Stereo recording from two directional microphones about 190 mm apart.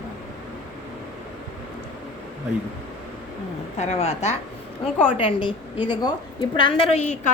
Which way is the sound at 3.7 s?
35° left (ahead or behind).